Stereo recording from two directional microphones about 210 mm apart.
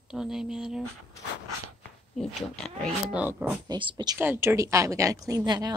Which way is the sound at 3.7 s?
20° right (ahead or behind).